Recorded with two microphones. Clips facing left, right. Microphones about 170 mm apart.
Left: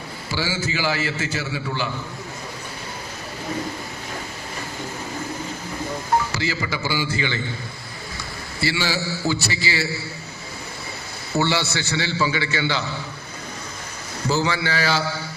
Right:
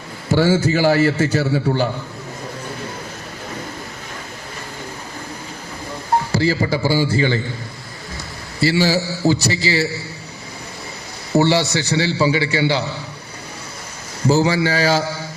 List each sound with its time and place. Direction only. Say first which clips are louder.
0.3 s a man's voice: right 11 dB; 50° right (ahead or behind)
6.3 s a man's voice: right 8 dB; 35° right (ahead or behind)
8.6 s a man's voice: right 7 dB; 40° right (ahead or behind)
11.3 s a man's voice: right 7 dB; 40° right (ahead or behind)
14.3 s a man's voice: right 7 dB; 40° right (ahead or behind)